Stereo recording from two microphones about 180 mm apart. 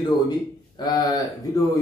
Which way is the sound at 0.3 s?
20° left (ahead or behind).